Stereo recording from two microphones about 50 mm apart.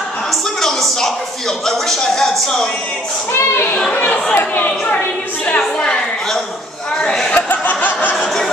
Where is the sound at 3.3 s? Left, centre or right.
Left.